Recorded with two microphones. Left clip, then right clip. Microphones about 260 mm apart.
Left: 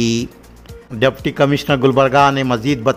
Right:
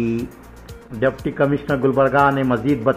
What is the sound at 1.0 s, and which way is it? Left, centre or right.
A man's voice, left.